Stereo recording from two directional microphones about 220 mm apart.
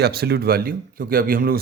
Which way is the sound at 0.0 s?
45° right (ahead or behind).